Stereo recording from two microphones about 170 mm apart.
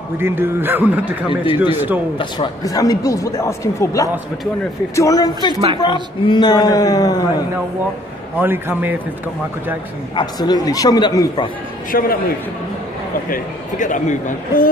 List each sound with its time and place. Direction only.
0.2 s a man's voice: 15° right (ahead or behind)
2.1 s speech: 25° left (ahead or behind)
8.4 s a man's voice: 10° right (ahead or behind)
10.1 s speech: 25° left (ahead or behind)
11.9 s a man's voice: 60° left (ahead or behind)
13.3 s speech: 50° left (ahead or behind)